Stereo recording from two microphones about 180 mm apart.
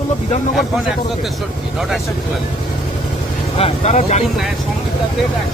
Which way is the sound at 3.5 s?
35° left (ahead or behind).